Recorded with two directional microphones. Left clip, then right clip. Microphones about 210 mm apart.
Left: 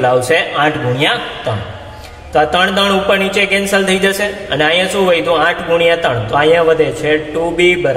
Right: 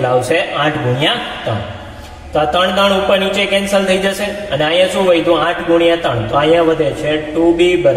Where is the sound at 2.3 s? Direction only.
50° left (ahead or behind).